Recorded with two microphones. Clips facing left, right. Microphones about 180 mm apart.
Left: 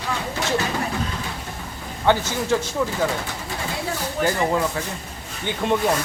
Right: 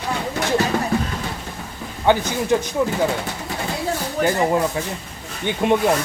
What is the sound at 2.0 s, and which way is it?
Speech, 15° right (ahead or behind).